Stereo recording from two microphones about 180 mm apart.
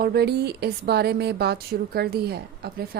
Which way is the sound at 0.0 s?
65° right (ahead or behind).